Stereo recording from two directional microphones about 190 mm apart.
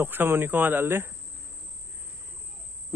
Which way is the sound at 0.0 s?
10° right (ahead or behind).